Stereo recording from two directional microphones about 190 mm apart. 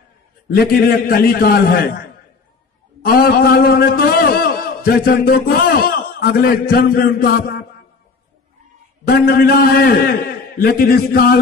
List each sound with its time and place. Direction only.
0.5 s a man's voice: 50° left (ahead or behind)
3.0 s a man's voice: 50° left (ahead or behind)
9.0 s a man's voice: 55° left (ahead or behind)